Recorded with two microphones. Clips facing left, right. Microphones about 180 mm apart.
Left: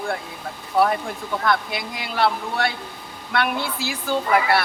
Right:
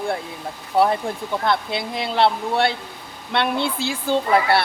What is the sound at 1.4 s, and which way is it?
A woman's voice, 25° right (ahead or behind).